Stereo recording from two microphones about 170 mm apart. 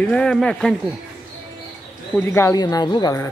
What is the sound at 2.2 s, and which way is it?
Speech, 15° left (ahead or behind).